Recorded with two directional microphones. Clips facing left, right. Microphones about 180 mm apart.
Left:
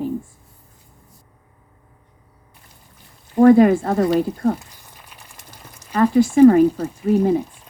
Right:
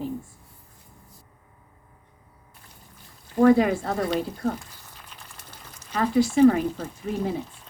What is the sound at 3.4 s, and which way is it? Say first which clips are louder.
Speech: left 7 dB; 50° left (ahead or behind).